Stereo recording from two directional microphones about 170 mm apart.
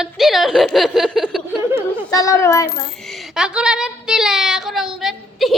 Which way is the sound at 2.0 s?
20° left (ahead or behind).